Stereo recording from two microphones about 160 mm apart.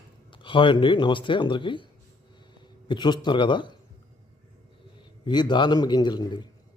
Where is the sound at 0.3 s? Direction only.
30° left (ahead or behind).